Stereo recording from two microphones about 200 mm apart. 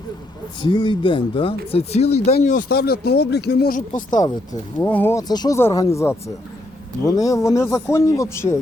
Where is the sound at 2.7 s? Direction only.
50° left (ahead or behind).